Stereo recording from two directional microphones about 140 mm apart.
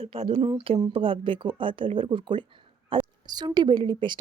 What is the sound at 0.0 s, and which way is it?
A woman's voice, 45° right (ahead or behind).